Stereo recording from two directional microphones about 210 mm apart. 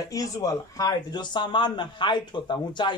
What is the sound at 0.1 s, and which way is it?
Speech, 15° left (ahead or behind).